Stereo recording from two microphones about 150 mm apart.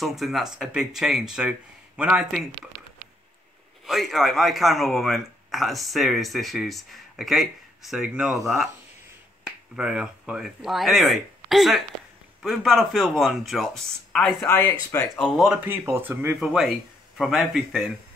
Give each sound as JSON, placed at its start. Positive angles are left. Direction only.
{"t": 0.0, "sound": "speech", "side_deg": 0}
{"t": 3.8, "sound": "speech", "side_deg": 0}
{"t": 9.8, "sound": "speech", "side_deg": -5}
{"t": 14.5, "sound": "speech", "side_deg": 15}
{"t": 15.1, "sound": "speech", "side_deg": 0}